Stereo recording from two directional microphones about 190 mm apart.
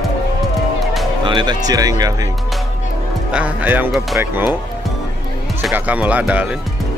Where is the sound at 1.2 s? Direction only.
25° right (ahead or behind).